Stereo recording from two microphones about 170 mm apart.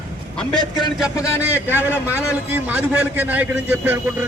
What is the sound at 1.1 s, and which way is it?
Speech, 15° left (ahead or behind).